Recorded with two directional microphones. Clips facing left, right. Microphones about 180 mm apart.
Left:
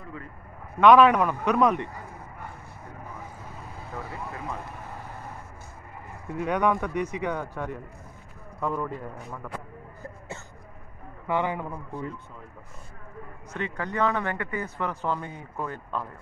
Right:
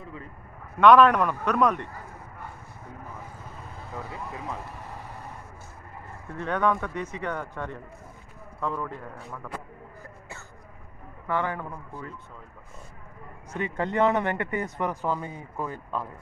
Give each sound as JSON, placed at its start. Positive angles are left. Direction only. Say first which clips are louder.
{"t": 0.7, "sound": "speech", "louder": "even", "side_deg": 10}
{"t": 3.9, "sound": "speech", "louder": "even", "side_deg": 0}
{"t": 6.2, "sound": "speech", "louder": "left 1 dB", "side_deg": 10}
{"t": 11.2, "sound": "speech", "louder": "left 2 dB", "side_deg": 15}
{"t": 13.5, "sound": "speech", "louder": "right 3 dB", "side_deg": -15}